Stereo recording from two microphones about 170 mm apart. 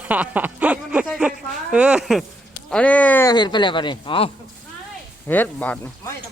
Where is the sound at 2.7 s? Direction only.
5° left (ahead or behind).